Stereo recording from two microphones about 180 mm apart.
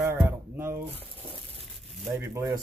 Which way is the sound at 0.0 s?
15° right (ahead or behind).